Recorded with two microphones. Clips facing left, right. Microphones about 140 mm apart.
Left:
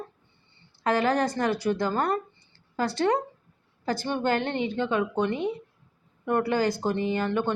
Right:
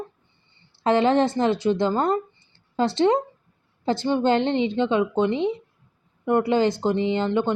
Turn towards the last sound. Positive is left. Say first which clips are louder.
# right 4 dB
turn(degrees=-20)  # may be behind; listen again after turning